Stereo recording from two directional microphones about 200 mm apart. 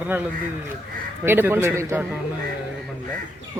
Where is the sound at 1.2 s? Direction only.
10° right (ahead or behind).